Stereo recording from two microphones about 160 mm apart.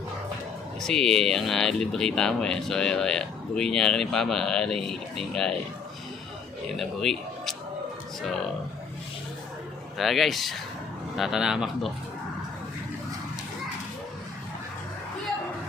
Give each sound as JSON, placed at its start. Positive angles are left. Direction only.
{"t": 0.8, "sound": "speech", "side_deg": 5}
{"t": 6.7, "sound": "speech", "side_deg": 0}
{"t": 10.0, "sound": "speech", "side_deg": 0}